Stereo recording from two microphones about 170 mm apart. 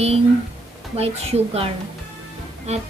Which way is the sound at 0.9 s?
35° right (ahead or behind).